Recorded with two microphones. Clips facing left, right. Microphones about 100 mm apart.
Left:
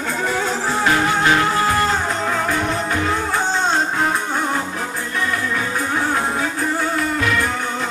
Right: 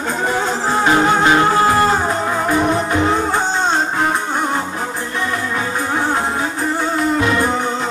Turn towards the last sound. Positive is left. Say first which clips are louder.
# right 3 dB
turn(degrees=-25)  # may be behind; listen again after turning